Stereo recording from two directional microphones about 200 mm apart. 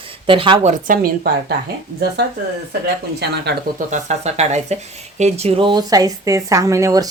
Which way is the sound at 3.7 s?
35° right (ahead or behind).